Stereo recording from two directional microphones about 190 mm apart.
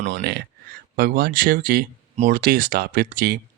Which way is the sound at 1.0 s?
50° right (ahead or behind).